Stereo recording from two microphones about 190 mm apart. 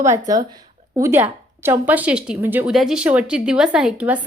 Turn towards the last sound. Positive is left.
turn(degrees=-5)  # may be behind; listen again after turning